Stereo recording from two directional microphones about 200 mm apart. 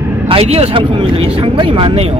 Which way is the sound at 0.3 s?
30° right (ahead or behind).